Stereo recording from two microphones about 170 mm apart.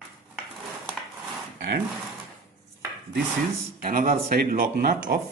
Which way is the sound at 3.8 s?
55° right (ahead or behind).